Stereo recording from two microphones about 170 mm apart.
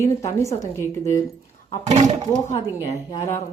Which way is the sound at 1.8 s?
40° right (ahead or behind).